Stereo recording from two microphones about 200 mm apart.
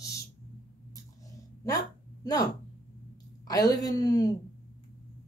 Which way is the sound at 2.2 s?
20° left (ahead or behind).